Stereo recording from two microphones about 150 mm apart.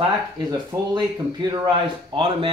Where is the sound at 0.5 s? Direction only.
30° right (ahead or behind).